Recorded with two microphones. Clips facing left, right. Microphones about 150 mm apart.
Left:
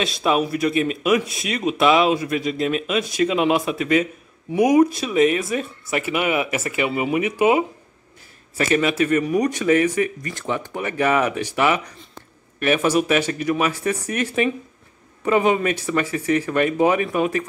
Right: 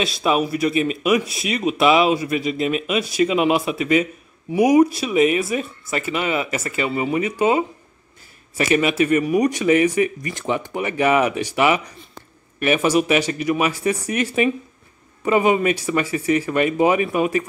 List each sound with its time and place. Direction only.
0.0 s speech: 5° right (ahead or behind)
5.9 s speech: 10° left (ahead or behind)
8.5 s speech: 10° right (ahead or behind)